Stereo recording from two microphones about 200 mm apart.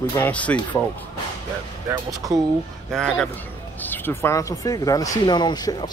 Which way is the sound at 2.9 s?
5° left (ahead or behind).